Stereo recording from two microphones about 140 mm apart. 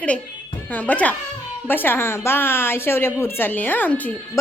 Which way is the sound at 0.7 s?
10° left (ahead or behind).